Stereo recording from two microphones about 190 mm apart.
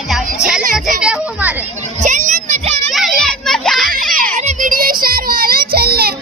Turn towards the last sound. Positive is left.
turn(degrees=-55)  # may be behind; listen again after turning